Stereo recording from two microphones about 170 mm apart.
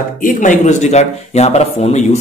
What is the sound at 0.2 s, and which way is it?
Speech, 50° left (ahead or behind).